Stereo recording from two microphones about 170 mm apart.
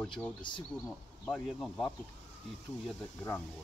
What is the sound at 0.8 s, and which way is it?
Speech, 5° left (ahead or behind).